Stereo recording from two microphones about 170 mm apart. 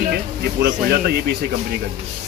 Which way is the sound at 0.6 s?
80° right.